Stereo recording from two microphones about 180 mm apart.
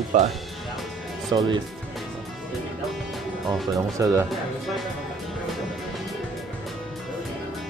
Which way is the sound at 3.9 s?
15° right (ahead or behind).